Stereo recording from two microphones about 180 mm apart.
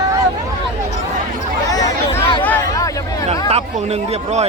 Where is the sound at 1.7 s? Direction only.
20° left (ahead or behind).